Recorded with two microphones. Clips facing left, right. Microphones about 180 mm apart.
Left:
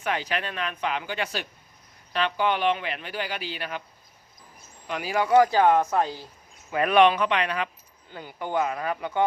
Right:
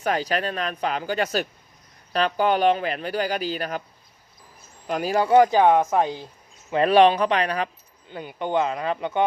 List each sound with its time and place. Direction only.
0.0 s speech: 40° right (ahead or behind)
4.9 s speech: 40° right (ahead or behind)
5.3 s speech: 20° right (ahead or behind); by 7.7 s 40° right (ahead or behind)
8.1 s speech: 20° right (ahead or behind)